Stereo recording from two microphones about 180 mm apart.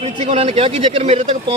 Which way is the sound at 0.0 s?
35° right (ahead or behind).